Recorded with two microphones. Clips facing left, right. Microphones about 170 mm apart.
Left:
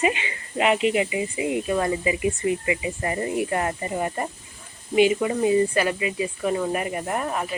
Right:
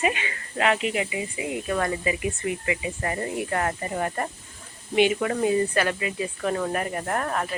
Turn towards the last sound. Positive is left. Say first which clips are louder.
# even
turn(degrees=5)  # may be behind; listen again after turning